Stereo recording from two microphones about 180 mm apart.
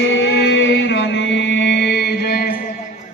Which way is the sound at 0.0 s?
90° left.